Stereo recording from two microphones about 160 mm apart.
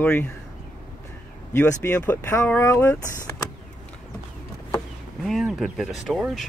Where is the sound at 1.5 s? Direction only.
15° left (ahead or behind).